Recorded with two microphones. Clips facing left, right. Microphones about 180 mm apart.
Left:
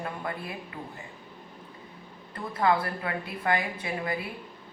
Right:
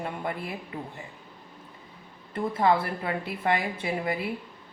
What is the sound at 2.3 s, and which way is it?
Speech, 25° right (ahead or behind).